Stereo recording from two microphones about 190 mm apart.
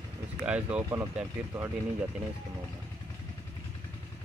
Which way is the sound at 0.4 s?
5° right (ahead or behind).